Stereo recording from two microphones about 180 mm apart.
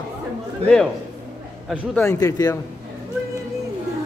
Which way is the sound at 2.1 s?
20° left (ahead or behind).